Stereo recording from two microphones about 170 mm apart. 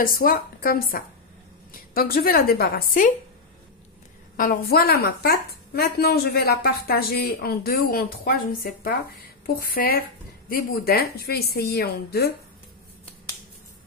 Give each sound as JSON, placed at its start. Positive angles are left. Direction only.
{"t": 0.0, "sound": "a woman's voice", "side_deg": 60}
{"t": 4.4, "sound": "a woman's voice", "side_deg": 55}
{"t": 9.6, "sound": "a woman's voice", "side_deg": 60}